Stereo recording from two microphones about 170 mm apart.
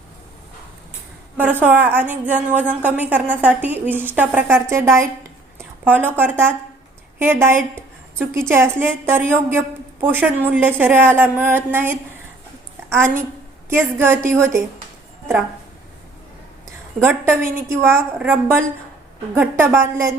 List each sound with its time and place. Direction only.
1.4 s a woman's voice: 10° right (ahead or behind)
17.1 s a woman's voice: 15° right (ahead or behind)